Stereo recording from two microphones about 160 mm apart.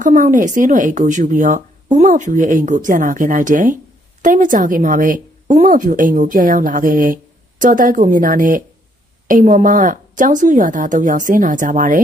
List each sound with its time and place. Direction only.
0.0 s speech: 55° right (ahead or behind)